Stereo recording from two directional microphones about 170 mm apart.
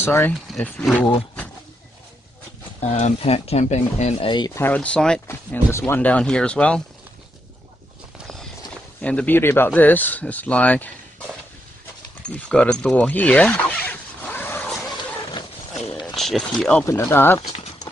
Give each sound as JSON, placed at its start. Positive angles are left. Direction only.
{"t": 0.0, "sound": "speech", "side_deg": 10}
{"t": 2.8, "sound": "speech", "side_deg": 40}
{"t": 4.6, "sound": "speech", "side_deg": 10}
{"t": 9.0, "sound": "speech", "side_deg": 10}
{"t": 12.3, "sound": "a sound", "side_deg": 5}
{"t": 16.2, "sound": "speech", "side_deg": 0}
{"t": 16.8, "sound": "speech", "side_deg": 15}
{"t": 17.4, "sound": "clip-clop", "side_deg": 40}